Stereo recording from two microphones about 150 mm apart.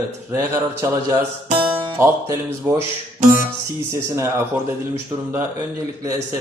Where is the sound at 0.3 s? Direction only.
20° right (ahead or behind).